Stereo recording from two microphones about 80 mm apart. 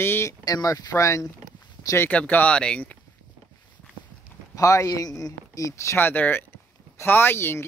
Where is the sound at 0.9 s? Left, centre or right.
Left.